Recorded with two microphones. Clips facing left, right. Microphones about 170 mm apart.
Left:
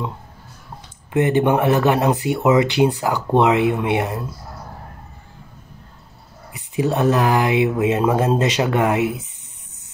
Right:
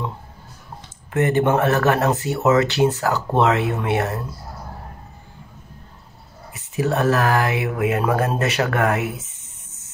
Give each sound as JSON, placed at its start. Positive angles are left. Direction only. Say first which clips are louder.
{"t": 1.1, "sound": "speech", "louder": "left 1 dB", "side_deg": 15}
{"t": 6.5, "sound": "speech", "louder": "left 1 dB", "side_deg": 15}